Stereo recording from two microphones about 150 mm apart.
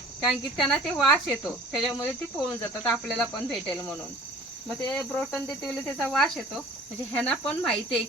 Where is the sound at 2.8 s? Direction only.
5° left (ahead or behind).